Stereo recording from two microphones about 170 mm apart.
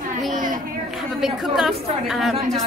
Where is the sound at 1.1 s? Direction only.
Centre (ahead or behind).